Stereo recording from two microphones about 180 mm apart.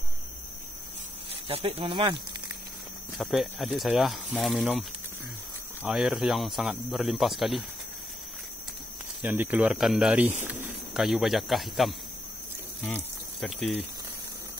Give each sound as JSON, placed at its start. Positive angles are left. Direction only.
{"t": 1.3, "sound": "speech", "side_deg": -35}
{"t": 3.2, "sound": "speech", "side_deg": 0}
{"t": 9.2, "sound": "speech", "side_deg": -10}
{"t": 12.8, "sound": "a sound", "side_deg": 10}